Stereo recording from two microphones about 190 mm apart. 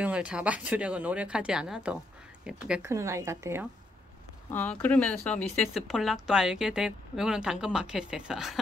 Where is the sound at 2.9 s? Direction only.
15° right (ahead or behind).